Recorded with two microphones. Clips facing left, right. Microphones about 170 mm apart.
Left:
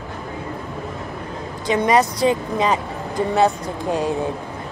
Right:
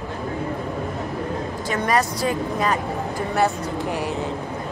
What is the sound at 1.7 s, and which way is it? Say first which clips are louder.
Speech: left 5 dB; 20° left (ahead or behind).